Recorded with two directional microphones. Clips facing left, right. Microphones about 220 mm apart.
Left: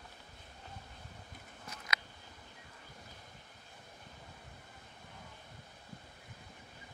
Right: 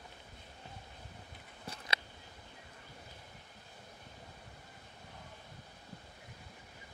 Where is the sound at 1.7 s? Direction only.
30° right (ahead or behind).